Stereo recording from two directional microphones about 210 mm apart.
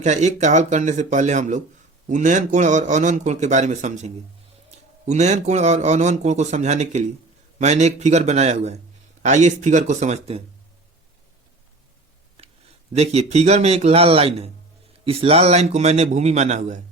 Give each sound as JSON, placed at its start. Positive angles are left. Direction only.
{"t": 0.0, "sound": "a man's voice", "side_deg": -35}
{"t": 12.4, "sound": "a sound", "side_deg": -25}
{"t": 12.9, "sound": "a man's voice", "side_deg": -30}